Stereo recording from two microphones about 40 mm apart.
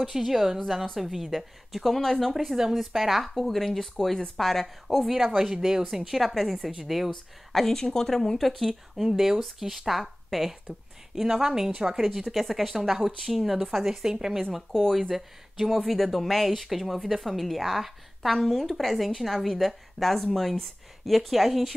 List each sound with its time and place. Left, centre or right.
0.0 s speech: centre
5.1 s speech: centre
12.0 s speech: centre
14.5 s speech: centre
15.8 s speech: centre